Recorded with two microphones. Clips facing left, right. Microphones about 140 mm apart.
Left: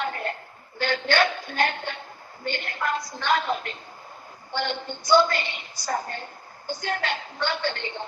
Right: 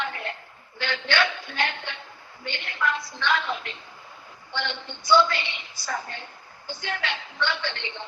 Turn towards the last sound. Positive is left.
turn(degrees=45)  # may be behind; listen again after turning